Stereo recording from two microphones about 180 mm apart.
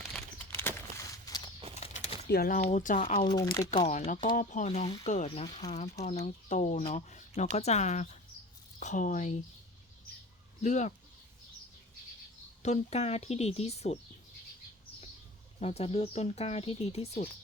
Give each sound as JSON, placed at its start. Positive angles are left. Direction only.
{"t": 0.1, "sound": "crumpling", "side_deg": 10}
{"t": 0.9, "sound": "walk", "side_deg": 20}
{"t": 1.7, "sound": "a sound", "side_deg": 40}
{"t": 2.3, "sound": "speech", "side_deg": 50}
{"t": 3.2, "sound": "speech", "side_deg": 25}
{"t": 3.7, "sound": "speech", "side_deg": 40}
{"t": 10.6, "sound": "speech", "side_deg": 40}
{"t": 12.6, "sound": "speech", "side_deg": 40}
{"t": 15.6, "sound": "speech", "side_deg": 35}